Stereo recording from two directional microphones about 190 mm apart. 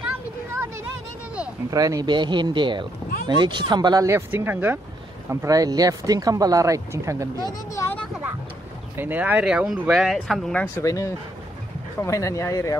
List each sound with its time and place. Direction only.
1.7 s speech: 20° right (ahead or behind)
7.3 s speech: 20° left (ahead or behind)
8.9 s speech: 10° right (ahead or behind); by 12.7 s 15° left (ahead or behind)